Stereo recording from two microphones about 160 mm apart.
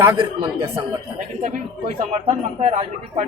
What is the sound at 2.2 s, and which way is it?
Speech, 40° right (ahead or behind).